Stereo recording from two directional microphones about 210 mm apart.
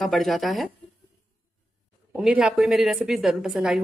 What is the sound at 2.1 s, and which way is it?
A woman's voice, 5° right (ahead or behind).